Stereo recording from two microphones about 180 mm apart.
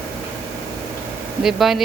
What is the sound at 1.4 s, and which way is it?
Speech, centre (ahead or behind).